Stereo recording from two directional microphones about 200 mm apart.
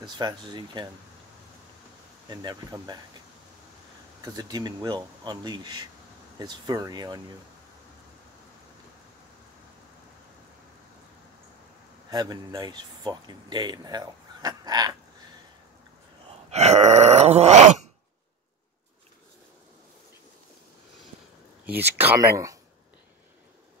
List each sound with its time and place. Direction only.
0.0 s speech: 20° right (ahead or behind)
2.2 s speech: 20° right (ahead or behind)
4.2 s speech: 20° right (ahead or behind)
12.1 s speech: 20° right (ahead or behind)
16.4 s groan: 35° right (ahead or behind)
21.6 s speech: 10° right (ahead or behind)